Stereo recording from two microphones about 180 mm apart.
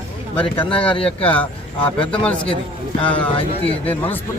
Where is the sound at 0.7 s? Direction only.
30° left (ahead or behind).